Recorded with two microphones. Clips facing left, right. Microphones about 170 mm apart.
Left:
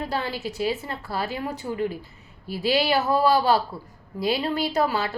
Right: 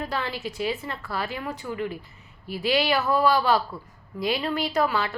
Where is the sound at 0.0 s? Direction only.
30° left (ahead or behind).